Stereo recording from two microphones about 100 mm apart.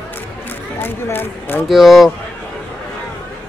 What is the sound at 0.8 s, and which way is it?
Speech, 20° left (ahead or behind).